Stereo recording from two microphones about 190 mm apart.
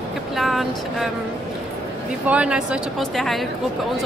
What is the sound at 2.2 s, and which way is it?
Speech, 5° right (ahead or behind).